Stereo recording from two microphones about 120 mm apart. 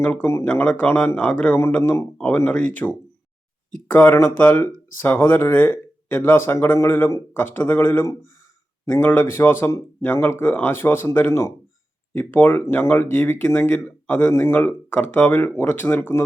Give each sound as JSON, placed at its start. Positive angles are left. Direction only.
{"t": 0.0, "sound": "speech", "side_deg": 15}
{"t": 1.8, "sound": "a man's voice", "side_deg": 20}